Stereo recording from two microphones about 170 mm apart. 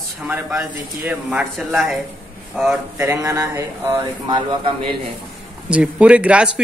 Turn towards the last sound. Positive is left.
turn(degrees=-5)  # may be behind; listen again after turning